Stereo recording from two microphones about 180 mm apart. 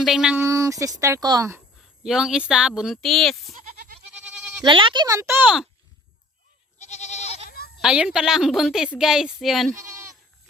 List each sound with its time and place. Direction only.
0.0 s speech: 5° right (ahead or behind)
0.4 s speech: 15° right (ahead or behind)
2.0 s speech: 5° right (ahead or behind)
3.5 s goat: 45° right (ahead or behind)
4.6 s speech: 30° right (ahead or behind); by 5.6 s 10° right (ahead or behind)
6.7 s goat: 40° left (ahead or behind)
7.8 s speech: 5° right (ahead or behind)